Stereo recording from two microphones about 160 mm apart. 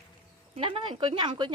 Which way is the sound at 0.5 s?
35° right (ahead or behind).